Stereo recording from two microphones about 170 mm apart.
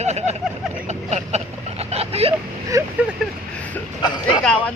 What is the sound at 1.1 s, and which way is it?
Vehicle, 40° right (ahead or behind).